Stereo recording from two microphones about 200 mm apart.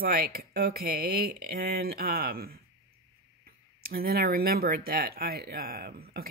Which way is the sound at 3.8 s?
50° right (ahead or behind).